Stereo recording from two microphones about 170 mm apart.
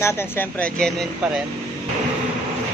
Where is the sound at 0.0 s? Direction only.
15° left (ahead or behind).